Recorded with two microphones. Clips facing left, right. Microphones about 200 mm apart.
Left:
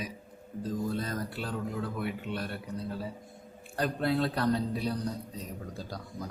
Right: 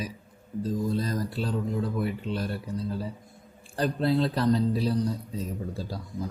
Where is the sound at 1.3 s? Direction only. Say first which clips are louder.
Right 5 dB; 25° right (ahead or behind).